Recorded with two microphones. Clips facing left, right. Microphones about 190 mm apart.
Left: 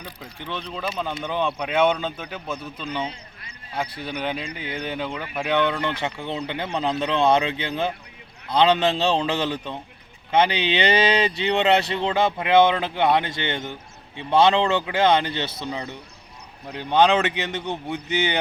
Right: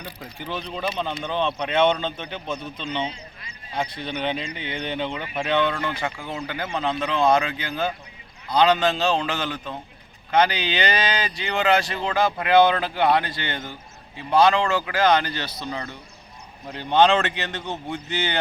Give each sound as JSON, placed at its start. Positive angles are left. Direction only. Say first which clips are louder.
{"t": 0.0, "sound": "speech", "louder": "right 1 dB", "side_deg": -5}
{"t": 5.6, "sound": "speech", "louder": "left 1 dB", "side_deg": 20}
{"t": 16.7, "sound": "speech", "louder": "even", "side_deg": 15}